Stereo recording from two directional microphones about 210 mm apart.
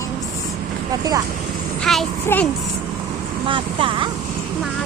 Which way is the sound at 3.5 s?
25° right (ahead or behind).